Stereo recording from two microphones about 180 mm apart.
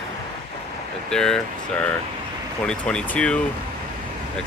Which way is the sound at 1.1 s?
5° left (ahead or behind).